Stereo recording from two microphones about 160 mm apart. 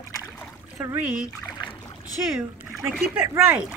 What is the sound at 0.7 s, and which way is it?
Speech, 10° right (ahead or behind).